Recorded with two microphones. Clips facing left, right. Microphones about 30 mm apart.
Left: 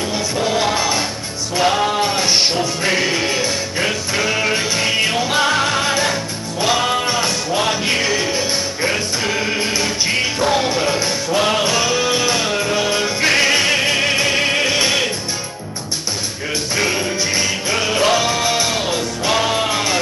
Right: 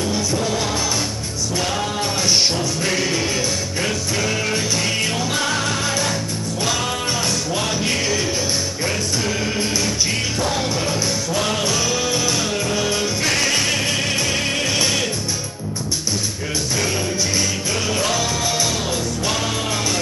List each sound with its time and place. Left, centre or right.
0.1 s music: left
16.7 s music: left